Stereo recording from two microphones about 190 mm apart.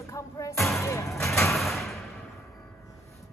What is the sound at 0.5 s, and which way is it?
Speech, centre (ahead or behind).